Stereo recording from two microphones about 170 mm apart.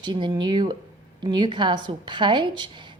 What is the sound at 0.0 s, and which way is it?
A woman's voice, 25° right (ahead or behind).